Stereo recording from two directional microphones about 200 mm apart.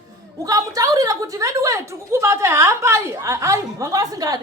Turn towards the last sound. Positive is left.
turn(degrees=-20)  # may be behind; listen again after turning